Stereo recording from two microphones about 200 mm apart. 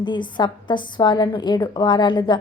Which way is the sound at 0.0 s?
20° left (ahead or behind).